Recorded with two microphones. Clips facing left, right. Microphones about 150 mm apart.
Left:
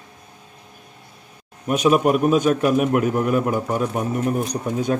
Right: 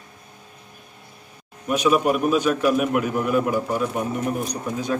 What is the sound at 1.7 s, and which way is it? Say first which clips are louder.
A man's voice: left 2 dB; 45° left (ahead or behind).